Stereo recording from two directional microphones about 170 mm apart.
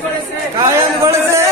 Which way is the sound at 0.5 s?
15° right (ahead or behind).